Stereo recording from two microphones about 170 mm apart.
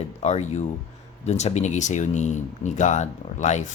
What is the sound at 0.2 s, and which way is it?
Speech, 40° left (ahead or behind).